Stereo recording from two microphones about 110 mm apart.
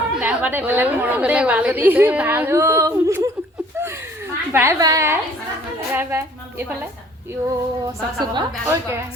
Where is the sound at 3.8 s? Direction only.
20° right (ahead or behind).